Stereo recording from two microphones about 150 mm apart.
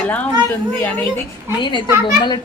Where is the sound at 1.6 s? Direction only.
30° left (ahead or behind).